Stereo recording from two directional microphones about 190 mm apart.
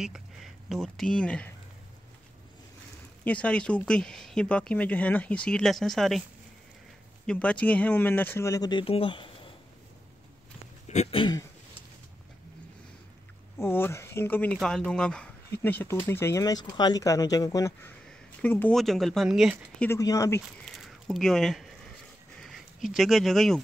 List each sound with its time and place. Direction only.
0.0 s speech: centre (ahead or behind)
3.3 s speech: 5° left (ahead or behind)
7.2 s speech: 5° left (ahead or behind); by 9.5 s 25° left (ahead or behind)
10.9 s speech: 35° left (ahead or behind)
13.6 s speech: 10° left (ahead or behind)
19.9 s speech: 15° left (ahead or behind)
20.6 s a sound: centre (ahead or behind)
22.4 s speech: centre (ahead or behind)